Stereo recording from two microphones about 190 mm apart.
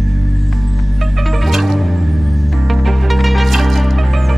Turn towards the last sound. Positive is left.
turn(degrees=0)  # may be behind; listen again after turning